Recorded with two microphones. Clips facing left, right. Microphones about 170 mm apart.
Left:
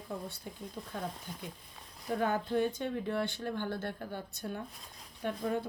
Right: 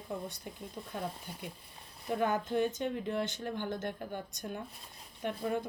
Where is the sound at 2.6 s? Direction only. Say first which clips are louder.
Right 1 dB; 50° right (ahead or behind).